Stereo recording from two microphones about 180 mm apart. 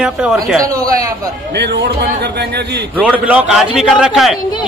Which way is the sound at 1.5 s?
70° right (ahead or behind).